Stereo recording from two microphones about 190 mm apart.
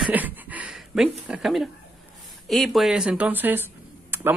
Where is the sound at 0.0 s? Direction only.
10° right (ahead or behind).